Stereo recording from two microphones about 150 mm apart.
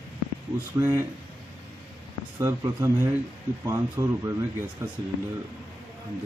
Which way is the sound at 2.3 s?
20° right (ahead or behind).